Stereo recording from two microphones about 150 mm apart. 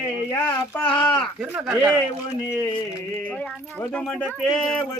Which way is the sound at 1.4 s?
10° right (ahead or behind).